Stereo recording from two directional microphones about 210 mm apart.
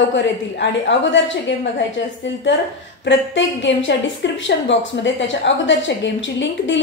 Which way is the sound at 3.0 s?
60° left (ahead or behind).